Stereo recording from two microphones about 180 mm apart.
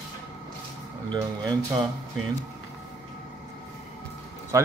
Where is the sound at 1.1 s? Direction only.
20° right (ahead or behind).